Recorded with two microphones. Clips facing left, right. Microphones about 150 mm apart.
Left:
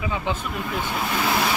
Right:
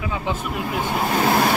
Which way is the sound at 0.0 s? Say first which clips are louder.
Right 1 dB; 5° right (ahead or behind).